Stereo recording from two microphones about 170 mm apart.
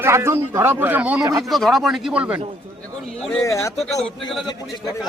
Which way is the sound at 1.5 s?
Centre (ahead or behind).